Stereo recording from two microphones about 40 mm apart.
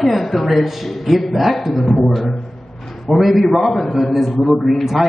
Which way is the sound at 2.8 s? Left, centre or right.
Centre.